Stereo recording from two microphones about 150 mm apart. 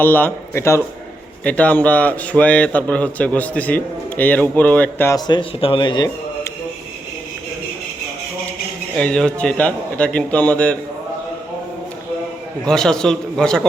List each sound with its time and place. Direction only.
0.0 s a man's voice: 10° left (ahead or behind)
5.1 s speech: 35° left (ahead or behind)
9.0 s a man's voice: 5° left (ahead or behind)
12.6 s a man's voice: 5° left (ahead or behind)